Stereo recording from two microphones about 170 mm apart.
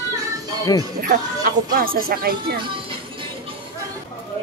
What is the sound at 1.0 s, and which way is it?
Speech, 50° right (ahead or behind).